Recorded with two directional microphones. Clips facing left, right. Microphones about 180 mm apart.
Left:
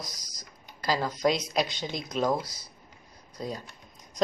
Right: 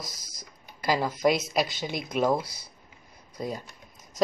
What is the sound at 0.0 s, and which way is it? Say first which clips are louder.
Speech: even; 10° right (ahead or behind).